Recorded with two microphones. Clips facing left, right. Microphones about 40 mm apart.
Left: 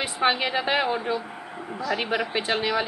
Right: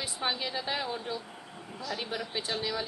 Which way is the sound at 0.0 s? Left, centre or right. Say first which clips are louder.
Left 10 dB; left.